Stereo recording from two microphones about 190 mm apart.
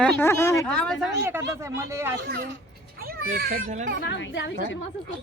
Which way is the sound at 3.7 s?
40° right (ahead or behind).